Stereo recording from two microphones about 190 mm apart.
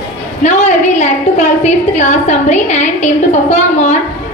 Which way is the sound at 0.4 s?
35° left (ahead or behind).